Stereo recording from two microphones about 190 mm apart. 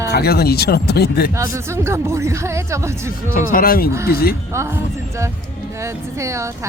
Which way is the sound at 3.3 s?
50° left (ahead or behind).